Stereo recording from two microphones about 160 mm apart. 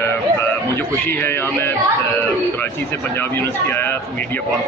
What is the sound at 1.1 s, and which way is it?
Speech, 15° left (ahead or behind).